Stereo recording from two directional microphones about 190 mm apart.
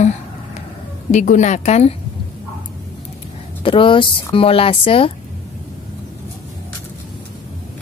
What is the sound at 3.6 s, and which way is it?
Speech, 25° left (ahead or behind).